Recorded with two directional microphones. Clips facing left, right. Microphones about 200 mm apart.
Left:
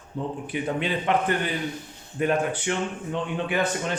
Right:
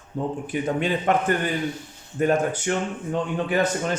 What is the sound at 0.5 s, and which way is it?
A man's voice, 45° right (ahead or behind).